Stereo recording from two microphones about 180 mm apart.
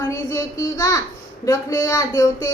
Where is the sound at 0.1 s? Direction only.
15° left (ahead or behind).